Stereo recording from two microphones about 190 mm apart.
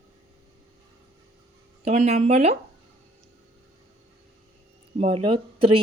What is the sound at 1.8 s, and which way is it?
Speech, 35° right (ahead or behind).